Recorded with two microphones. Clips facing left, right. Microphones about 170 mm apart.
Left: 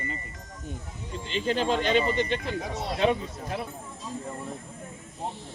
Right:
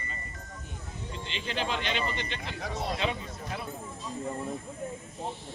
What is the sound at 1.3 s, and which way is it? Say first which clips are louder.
Speech: left 8 dB; 45° left (ahead or behind).